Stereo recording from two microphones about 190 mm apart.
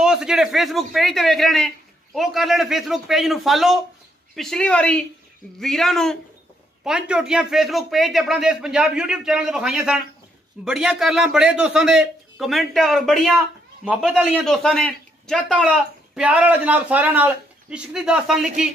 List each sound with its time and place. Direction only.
0.0 s a man's voice: 5° right (ahead or behind)